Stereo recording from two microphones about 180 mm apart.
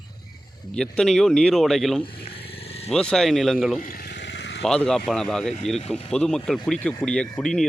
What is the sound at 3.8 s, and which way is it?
Vehicle, 55° left (ahead or behind).